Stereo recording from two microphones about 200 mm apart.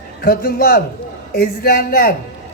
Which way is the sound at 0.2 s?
50° left (ahead or behind).